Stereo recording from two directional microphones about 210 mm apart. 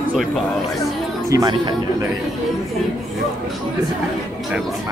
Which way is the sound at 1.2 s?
15° right (ahead or behind).